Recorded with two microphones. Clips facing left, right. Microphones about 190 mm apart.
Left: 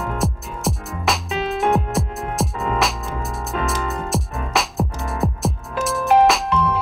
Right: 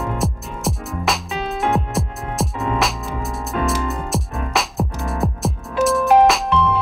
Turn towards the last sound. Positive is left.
turn(degrees=0)  # may be behind; listen again after turning